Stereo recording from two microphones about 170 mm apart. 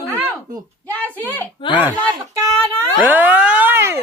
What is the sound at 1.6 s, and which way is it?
Speech, 30° left (ahead or behind).